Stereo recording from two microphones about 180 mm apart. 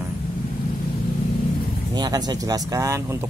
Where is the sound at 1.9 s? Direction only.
20° right (ahead or behind).